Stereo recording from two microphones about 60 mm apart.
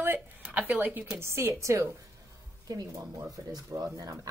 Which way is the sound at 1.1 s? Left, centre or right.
Right.